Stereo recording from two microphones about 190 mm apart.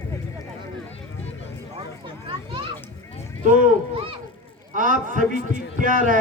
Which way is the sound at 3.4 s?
45° right (ahead or behind).